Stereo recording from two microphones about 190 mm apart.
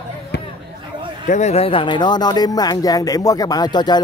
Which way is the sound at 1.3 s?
35° left (ahead or behind).